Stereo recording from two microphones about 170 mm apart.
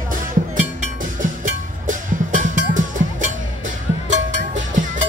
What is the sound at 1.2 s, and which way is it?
Music, 50° right (ahead or behind).